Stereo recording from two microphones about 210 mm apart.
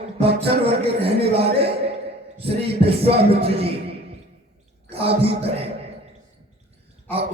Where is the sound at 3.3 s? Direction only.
30° right (ahead or behind).